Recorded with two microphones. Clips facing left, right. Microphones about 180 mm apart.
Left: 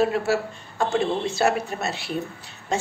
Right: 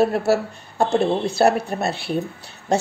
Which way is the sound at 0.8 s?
35° right (ahead or behind).